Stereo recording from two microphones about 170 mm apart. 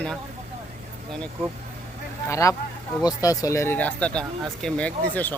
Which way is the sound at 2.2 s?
20° left (ahead or behind).